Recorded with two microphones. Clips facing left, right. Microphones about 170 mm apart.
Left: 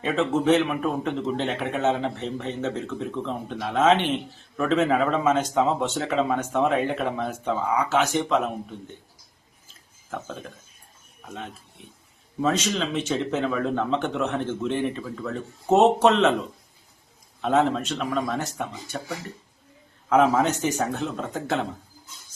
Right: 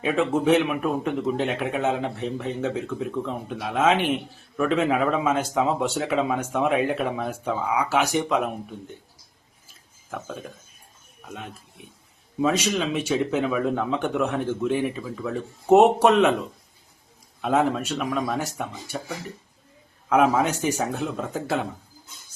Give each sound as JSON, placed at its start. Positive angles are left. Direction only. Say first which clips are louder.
{"t": 0.0, "sound": "a man's voice", "louder": "right 1 dB", "side_deg": -10}
{"t": 9.6, "sound": "a sound", "louder": "even", "side_deg": -10}
{"t": 12.4, "sound": "a man's voice", "louder": "right 1 dB", "side_deg": -10}
{"t": 17.4, "sound": "a man's voice", "louder": "even", "side_deg": -10}